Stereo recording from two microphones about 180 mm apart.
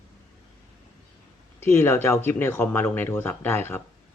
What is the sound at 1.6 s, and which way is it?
Speech, 15° left (ahead or behind).